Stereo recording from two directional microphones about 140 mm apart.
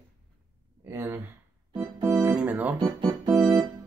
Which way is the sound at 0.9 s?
15° right (ahead or behind).